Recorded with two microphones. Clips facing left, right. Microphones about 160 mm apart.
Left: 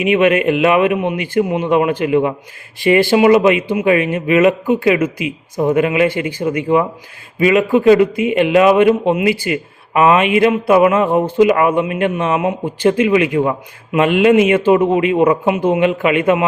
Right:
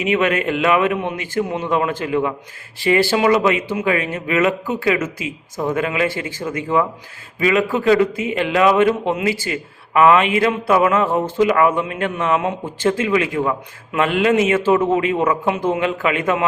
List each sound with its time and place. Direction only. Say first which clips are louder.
0.0 s a man's voice: left 5 dB; 20° left (ahead or behind)